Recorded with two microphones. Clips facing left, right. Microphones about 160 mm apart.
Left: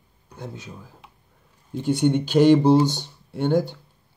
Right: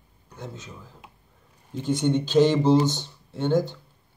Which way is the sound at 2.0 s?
15° left (ahead or behind).